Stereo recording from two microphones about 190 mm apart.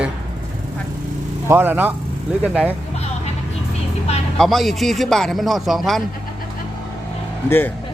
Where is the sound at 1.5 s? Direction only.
10° right (ahead or behind).